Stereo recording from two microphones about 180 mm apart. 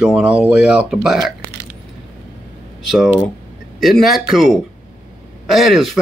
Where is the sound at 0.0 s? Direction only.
5° right (ahead or behind).